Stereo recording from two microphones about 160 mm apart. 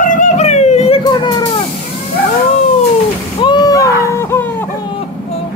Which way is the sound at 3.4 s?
25° left (ahead or behind).